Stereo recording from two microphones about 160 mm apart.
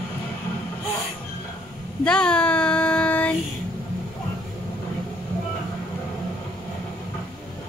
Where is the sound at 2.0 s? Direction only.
5° left (ahead or behind).